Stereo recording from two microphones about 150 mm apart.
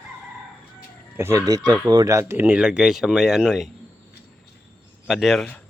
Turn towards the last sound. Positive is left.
turn(degrees=0)  # may be behind; listen again after turning